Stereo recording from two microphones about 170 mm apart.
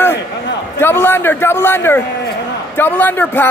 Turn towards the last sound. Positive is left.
turn(degrees=10)  # may be behind; listen again after turning